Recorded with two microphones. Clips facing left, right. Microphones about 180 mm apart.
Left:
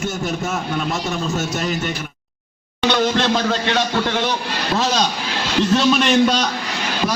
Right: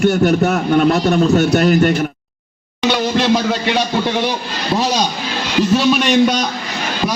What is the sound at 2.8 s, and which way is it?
A man's voice, 10° right (ahead or behind).